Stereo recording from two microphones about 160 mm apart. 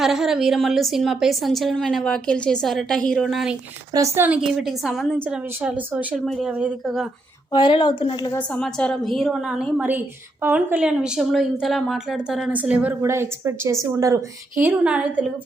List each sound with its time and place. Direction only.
0.0 s a woman's voice: centre (ahead or behind)
3.9 s a woman's voice: 15° right (ahead or behind)
7.5 s speech: 30° left (ahead or behind)
8.3 s a woman's voice: 10° left (ahead or behind); by 14.3 s 20° right (ahead or behind)
14.6 s a woman's voice: 10° right (ahead or behind)